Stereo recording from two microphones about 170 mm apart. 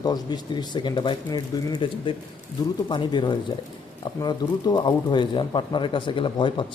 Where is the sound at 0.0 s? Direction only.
25° left (ahead or behind).